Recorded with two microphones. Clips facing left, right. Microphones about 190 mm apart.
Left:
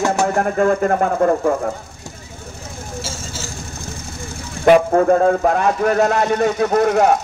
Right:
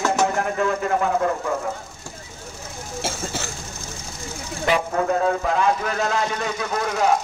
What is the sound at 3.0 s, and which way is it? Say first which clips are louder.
Vehicle: right 2 dB; 60° right (ahead or behind).